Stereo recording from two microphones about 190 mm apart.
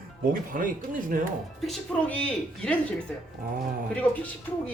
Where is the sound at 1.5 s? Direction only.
Centre (ahead or behind).